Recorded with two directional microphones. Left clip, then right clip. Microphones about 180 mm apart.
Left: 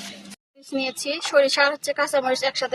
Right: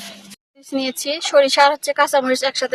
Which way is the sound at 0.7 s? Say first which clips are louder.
Right 4 dB; 35° right (ahead or behind).